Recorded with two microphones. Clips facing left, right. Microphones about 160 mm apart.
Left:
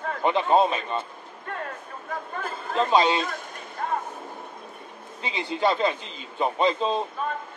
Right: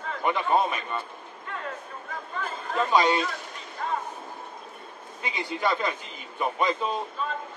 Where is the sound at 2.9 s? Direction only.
25° left (ahead or behind).